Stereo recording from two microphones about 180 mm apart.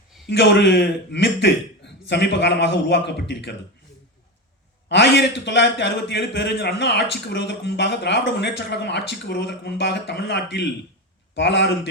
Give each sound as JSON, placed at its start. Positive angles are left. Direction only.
{"t": 0.3, "sound": "a man's voice", "side_deg": 70}
{"t": 4.9, "sound": "a man's voice", "side_deg": 70}